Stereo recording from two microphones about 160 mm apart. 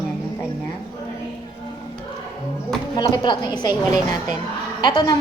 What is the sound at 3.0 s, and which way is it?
Speech, 30° left (ahead or behind).